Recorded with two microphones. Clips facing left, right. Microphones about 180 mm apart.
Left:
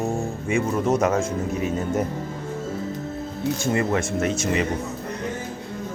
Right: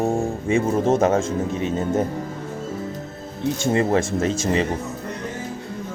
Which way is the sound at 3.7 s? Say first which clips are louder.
Right 4 dB; 30° right (ahead or behind).